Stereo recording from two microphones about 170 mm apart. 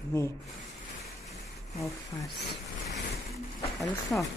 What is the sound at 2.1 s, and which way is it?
Speech, 30° left (ahead or behind).